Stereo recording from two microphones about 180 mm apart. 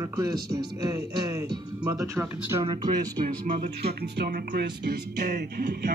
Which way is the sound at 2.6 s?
25° right (ahead or behind).